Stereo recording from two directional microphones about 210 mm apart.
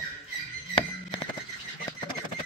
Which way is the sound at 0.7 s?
25° left (ahead or behind).